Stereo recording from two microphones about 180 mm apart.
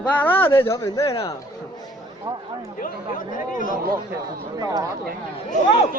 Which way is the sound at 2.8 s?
50° left (ahead or behind).